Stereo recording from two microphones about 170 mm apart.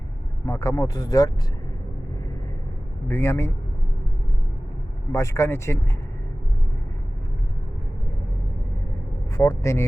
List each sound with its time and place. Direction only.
0.4 s speech: 15° left (ahead or behind)
3.1 s speech: 15° left (ahead or behind)
5.1 s speech: 15° left (ahead or behind)
9.3 s speech: 20° left (ahead or behind)